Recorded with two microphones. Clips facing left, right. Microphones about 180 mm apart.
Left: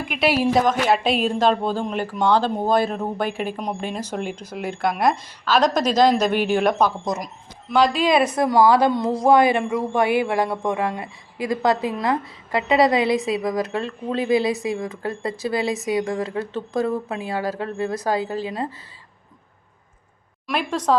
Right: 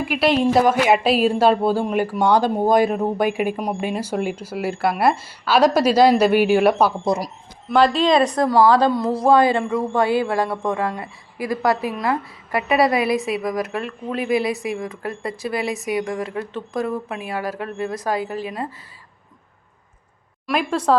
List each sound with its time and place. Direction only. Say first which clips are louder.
0.0 s a woman's voice: right 2 dB; 5° right (ahead or behind)
0.6 s speech: right 3 dB; 10° right (ahead or behind)
7.0 s speech: right 5 dB; 30° right (ahead or behind)
7.7 s a woman's voice: right 2 dB; 5° left (ahead or behind)
8.4 s a woman's voice: left 1 dB; 15° left (ahead or behind)
20.5 s speech: right 2 dB; 10° right (ahead or behind)